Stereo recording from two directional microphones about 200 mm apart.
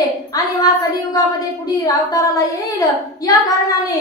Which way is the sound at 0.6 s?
20° left (ahead or behind).